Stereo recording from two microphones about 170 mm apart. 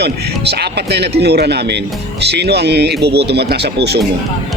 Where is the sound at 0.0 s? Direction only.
75° right (ahead or behind).